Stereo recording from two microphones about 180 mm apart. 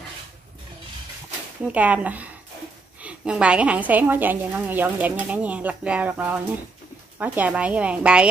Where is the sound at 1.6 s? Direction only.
10° right (ahead or behind).